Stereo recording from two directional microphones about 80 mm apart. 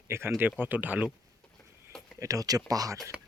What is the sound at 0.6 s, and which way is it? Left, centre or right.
Speech, right.